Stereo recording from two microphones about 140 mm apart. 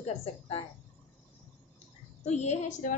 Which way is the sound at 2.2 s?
55° left (ahead or behind).